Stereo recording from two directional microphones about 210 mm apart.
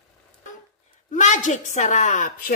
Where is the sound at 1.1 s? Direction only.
35° left (ahead or behind).